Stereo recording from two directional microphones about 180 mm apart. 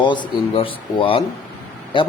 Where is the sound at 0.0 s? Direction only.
25° left (ahead or behind).